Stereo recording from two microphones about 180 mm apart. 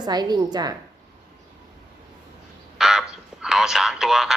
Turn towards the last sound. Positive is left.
turn(degrees=0)  # may be behind; listen again after turning